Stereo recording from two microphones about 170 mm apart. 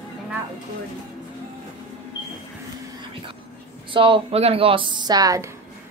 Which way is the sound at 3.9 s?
30° right (ahead or behind).